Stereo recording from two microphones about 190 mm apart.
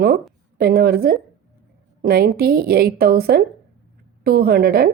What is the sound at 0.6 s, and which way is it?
A woman's voice, 55° right (ahead or behind).